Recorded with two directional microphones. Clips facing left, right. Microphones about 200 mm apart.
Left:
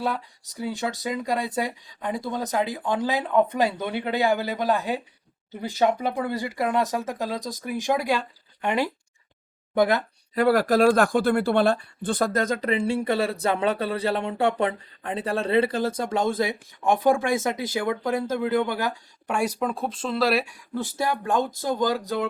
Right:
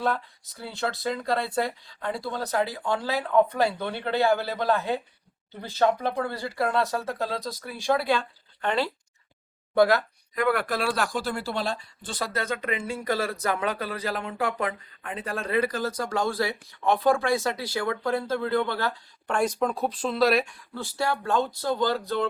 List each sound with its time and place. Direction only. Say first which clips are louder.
0.6 s speech: left 2 dB; 15° left (ahead or behind)
10.3 s speech: left 6 dB; 35° left (ahead or behind); by 20.6 s 5° left (ahead or behind)
20.7 s speech: left 2 dB; 15° left (ahead or behind)